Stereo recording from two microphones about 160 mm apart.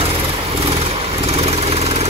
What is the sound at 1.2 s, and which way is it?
Vehicle, 40° right (ahead or behind).